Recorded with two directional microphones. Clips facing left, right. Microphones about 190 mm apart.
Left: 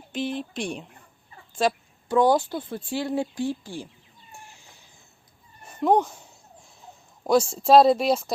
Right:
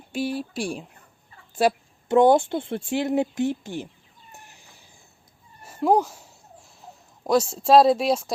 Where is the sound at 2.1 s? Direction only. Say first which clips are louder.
Right 3 dB; 25° right (ahead or behind).